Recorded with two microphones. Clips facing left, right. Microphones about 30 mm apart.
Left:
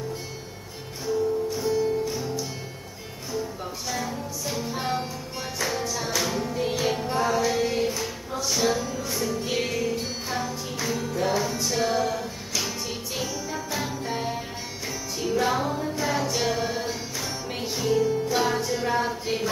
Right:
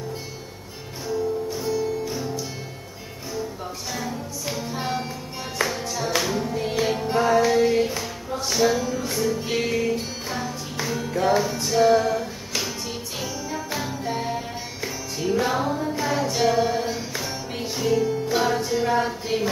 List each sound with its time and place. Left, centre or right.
1.0 s music: centre
2.0 s music: centre
3.9 s music: centre
6.3 s music: centre
7.2 s music: right
7.5 s music: centre
13.7 s jingle bell: centre
14.9 s music: centre